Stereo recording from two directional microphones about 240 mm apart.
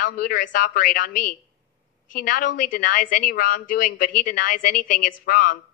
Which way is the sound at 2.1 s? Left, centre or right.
Left.